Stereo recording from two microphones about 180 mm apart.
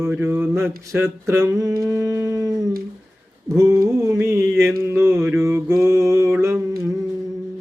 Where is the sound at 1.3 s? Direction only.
20° right (ahead or behind).